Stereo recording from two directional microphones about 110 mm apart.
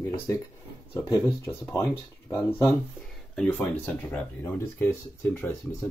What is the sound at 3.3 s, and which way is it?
Speech, 10° left (ahead or behind).